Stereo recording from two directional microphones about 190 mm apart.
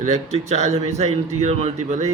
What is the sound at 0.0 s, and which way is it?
Speech, 35° right (ahead or behind).